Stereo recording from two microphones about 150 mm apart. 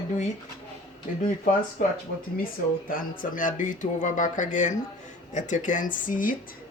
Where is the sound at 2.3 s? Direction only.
70° left (ahead or behind).